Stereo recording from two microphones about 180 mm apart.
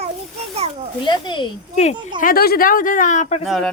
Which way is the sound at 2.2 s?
55° left (ahead or behind).